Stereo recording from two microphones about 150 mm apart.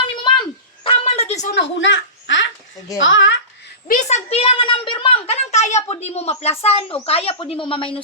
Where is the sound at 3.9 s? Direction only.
55° left (ahead or behind).